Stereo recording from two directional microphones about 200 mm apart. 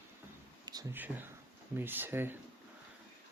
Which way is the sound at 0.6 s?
20° right (ahead or behind).